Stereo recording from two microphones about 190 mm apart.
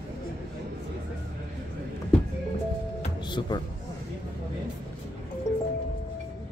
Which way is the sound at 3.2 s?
25° left (ahead or behind).